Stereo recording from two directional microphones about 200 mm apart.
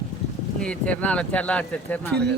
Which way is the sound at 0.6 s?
5° left (ahead or behind).